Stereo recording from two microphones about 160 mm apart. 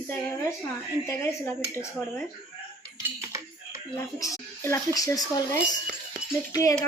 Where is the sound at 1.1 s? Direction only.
15° left (ahead or behind).